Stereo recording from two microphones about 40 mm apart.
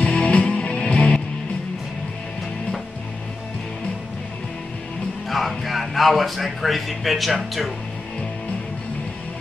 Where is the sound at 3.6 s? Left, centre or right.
Centre.